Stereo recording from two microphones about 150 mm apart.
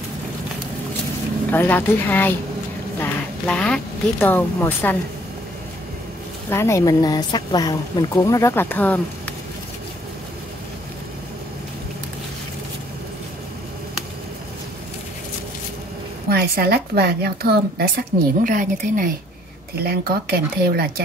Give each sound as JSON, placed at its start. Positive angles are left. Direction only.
{"t": 1.5, "sound": "a woman's voice", "side_deg": 15}
{"t": 6.5, "sound": "speech", "side_deg": 20}
{"t": 16.3, "sound": "a woman's voice", "side_deg": -90}
{"t": 19.8, "sound": "a woman's voice", "side_deg": -90}